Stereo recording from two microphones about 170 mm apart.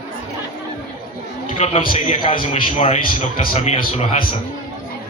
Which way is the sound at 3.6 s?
35° left (ahead or behind).